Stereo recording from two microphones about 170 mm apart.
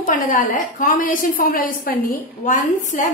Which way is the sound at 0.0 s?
50° left (ahead or behind).